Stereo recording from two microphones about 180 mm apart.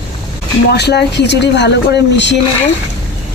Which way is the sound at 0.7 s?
65° left (ahead or behind).